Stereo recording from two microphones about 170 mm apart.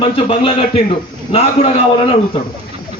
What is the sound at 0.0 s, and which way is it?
A man's voice, 35° left (ahead or behind).